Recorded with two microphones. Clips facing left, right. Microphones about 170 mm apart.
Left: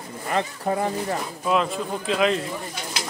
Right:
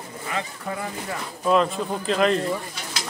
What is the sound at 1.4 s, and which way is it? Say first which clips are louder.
Speech: right 3 dB; centre (ahead or behind).